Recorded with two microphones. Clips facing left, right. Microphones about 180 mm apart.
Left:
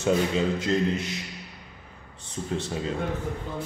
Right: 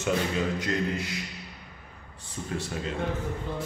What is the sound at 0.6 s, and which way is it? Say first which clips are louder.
Speech: left 4 dB; 25° left (ahead or behind).